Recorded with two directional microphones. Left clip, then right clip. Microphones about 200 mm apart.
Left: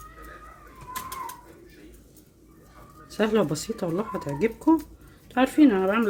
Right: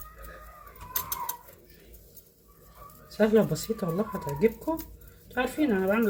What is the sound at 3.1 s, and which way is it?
Speech, 60° left (ahead or behind).